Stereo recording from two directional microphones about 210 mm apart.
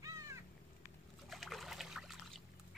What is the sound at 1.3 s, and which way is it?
Trickle, centre (ahead or behind).